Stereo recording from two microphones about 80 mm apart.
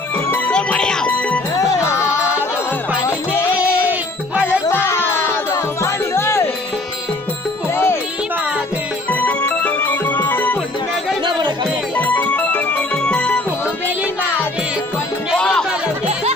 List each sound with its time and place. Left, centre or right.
0.5 s music: centre
1.6 s music: left
2.1 s music: centre
3.4 s a sound: centre
4.6 s music: left
7.7 s music: left
9.1 s music: left
11.2 s music: right
12.0 s music: left
15.3 s music: centre